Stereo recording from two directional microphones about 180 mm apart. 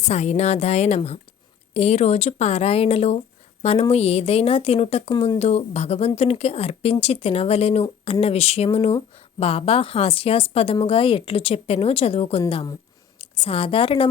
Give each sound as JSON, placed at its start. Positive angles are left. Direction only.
{"t": 0.0, "sound": "a woman's voice", "side_deg": 35}